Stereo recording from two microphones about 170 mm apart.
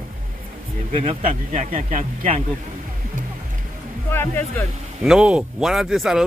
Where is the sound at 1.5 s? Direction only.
45° right (ahead or behind).